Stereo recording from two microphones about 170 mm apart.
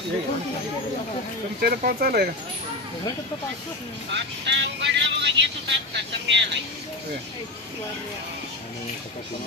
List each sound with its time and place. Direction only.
1.6 s speech: 65° right (ahead or behind)
4.1 s speech: 90° right